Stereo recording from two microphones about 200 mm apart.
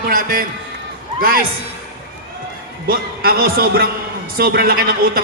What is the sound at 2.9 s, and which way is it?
Speech, 50° right (ahead or behind).